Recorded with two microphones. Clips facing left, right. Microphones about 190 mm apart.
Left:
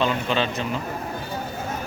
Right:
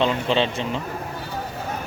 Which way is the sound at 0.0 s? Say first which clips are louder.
Right 2 dB; 25° right (ahead or behind).